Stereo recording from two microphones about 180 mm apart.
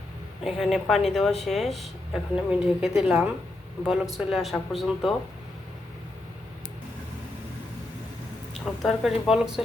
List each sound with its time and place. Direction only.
0.4 s speech: centre (ahead or behind)
8.5 s speech: centre (ahead or behind)